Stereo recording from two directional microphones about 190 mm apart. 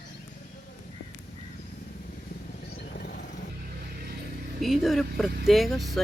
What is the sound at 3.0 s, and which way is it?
Vehicle, 50° left (ahead or behind).